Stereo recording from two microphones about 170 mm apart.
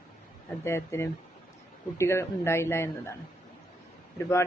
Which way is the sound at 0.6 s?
15° left (ahead or behind).